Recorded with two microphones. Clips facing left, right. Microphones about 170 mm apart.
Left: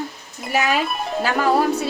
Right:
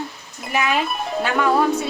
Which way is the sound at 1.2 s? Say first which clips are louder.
Even; 35° left (ahead or behind).